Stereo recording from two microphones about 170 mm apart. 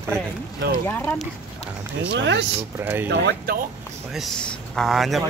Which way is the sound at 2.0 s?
90° right.